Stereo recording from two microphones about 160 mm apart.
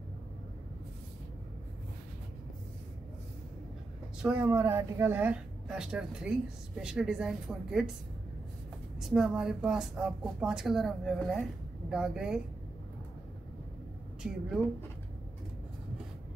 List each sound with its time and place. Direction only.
4.2 s a woman's voice: 10° right (ahead or behind)
9.0 s a woman's voice: 5° right (ahead or behind)